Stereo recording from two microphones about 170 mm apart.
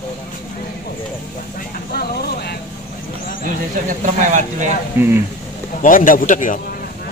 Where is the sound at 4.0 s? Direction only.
45° right (ahead or behind).